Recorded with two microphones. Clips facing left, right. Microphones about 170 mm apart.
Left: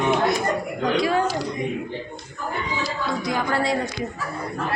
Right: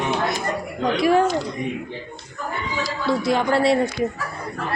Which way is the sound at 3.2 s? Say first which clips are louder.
Right 5 dB; 25° right (ahead or behind).